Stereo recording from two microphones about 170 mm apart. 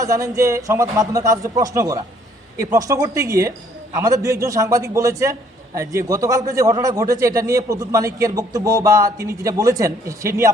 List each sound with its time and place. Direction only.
0.0 s a man's voice: 20° right (ahead or behind)